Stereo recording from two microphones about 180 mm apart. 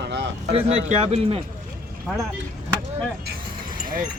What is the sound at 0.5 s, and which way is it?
Speech, 35° right (ahead or behind).